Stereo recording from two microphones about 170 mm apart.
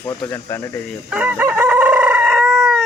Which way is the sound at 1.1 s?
10° right (ahead or behind).